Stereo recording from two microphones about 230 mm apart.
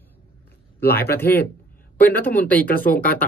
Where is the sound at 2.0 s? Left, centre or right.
Centre.